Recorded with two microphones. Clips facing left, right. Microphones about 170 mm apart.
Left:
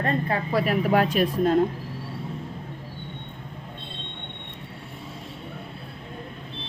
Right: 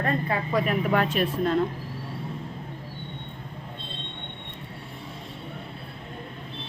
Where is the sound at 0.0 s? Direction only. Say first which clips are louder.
Left 1 dB; 30° left (ahead or behind).